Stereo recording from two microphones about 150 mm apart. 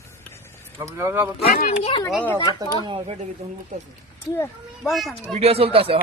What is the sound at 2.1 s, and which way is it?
Speech, 10° left (ahead or behind).